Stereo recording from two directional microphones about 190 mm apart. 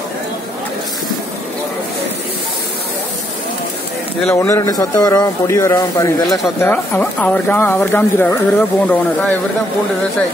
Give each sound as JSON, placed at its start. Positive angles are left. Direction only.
{"t": 4.2, "sound": "speech", "side_deg": 15}
{"t": 6.2, "sound": "speech", "side_deg": 0}
{"t": 6.6, "sound": "speech", "side_deg": 10}